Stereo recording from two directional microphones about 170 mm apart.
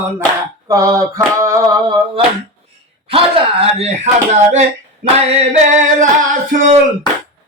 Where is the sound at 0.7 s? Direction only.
20° right (ahead or behind).